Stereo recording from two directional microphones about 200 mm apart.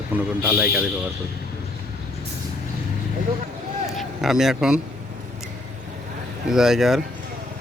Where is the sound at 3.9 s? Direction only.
Centre (ahead or behind).